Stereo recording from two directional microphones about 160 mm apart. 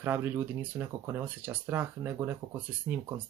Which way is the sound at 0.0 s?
10° right (ahead or behind).